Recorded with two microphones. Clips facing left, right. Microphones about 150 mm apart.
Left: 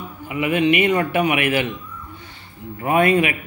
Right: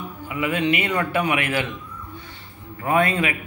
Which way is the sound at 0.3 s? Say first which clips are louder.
Left 4 dB; 15° left (ahead or behind).